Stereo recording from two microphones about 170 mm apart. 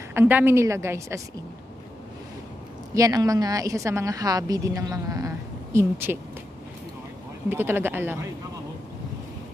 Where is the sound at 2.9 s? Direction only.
20° right (ahead or behind).